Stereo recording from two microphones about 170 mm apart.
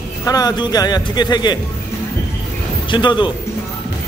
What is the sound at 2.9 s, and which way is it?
Speech, 25° left (ahead or behind).